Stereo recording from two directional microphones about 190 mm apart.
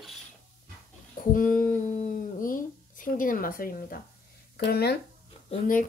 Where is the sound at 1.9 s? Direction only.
40° left (ahead or behind).